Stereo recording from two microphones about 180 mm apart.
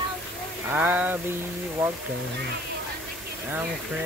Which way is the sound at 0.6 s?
10° right (ahead or behind).